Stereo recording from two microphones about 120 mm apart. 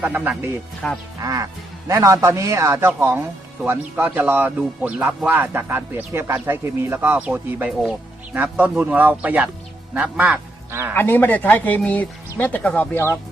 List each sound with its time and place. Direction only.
0.0 s speech: 10° right (ahead or behind)
0.8 s speech: 5° left (ahead or behind)
1.2 s a man's voice: 30° right (ahead or behind)
10.9 s speech: 15° left (ahead or behind)